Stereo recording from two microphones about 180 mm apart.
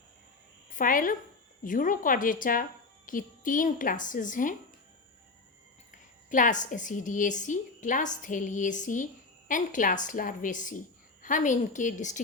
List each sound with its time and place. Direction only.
0.7 s a woman's voice: 50° left (ahead or behind)
6.3 s a woman's voice: 45° left (ahead or behind)